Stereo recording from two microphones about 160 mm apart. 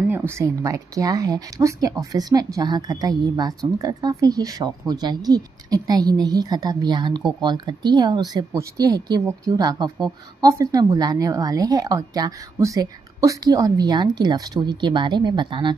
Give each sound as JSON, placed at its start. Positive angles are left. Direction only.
{"t": 0.1, "sound": "speech", "side_deg": -15}